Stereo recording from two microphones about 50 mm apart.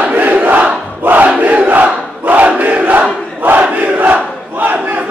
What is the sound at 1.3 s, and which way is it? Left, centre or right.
Crowd, right.